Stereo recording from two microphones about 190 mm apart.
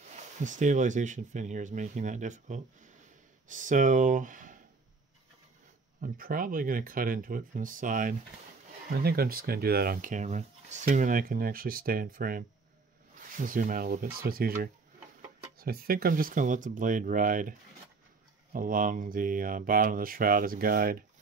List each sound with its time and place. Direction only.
0.1 s speech: 40° right (ahead or behind)
5.9 s speech: 50° right (ahead or behind)